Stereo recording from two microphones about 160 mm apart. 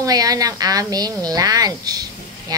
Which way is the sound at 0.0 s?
25° right (ahead or behind).